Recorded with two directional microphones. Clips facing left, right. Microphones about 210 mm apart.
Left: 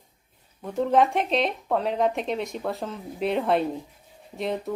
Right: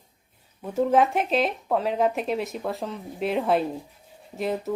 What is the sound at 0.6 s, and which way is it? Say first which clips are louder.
Speech: right 1 dB; 5° right (ahead or behind).